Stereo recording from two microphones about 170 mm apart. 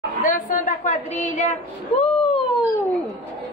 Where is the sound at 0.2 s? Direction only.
55° left (ahead or behind).